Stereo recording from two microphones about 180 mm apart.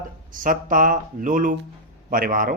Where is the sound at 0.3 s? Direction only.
45° right (ahead or behind).